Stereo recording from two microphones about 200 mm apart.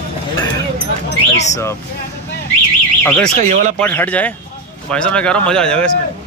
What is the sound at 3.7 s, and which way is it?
Speech, 5° left (ahead or behind).